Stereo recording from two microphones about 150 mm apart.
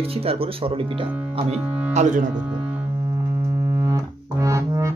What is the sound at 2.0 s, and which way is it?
Speech, 55° right (ahead or behind).